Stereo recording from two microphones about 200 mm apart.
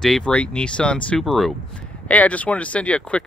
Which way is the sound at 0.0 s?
5° left (ahead or behind).